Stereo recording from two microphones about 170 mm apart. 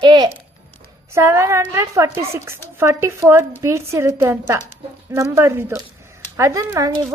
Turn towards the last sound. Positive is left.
turn(degrees=-20)  # may be behind; listen again after turning